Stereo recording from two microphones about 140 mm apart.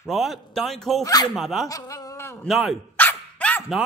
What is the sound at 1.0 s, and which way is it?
Speech, 30° left (ahead or behind).